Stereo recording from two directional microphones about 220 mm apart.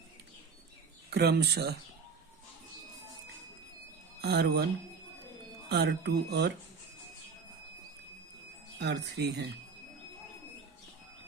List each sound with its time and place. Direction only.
1.1 s speech: 50° right (ahead or behind)
4.2 s speech: 50° right (ahead or behind)
5.6 s speech: 50° right (ahead or behind)
8.8 s speech: 50° right (ahead or behind)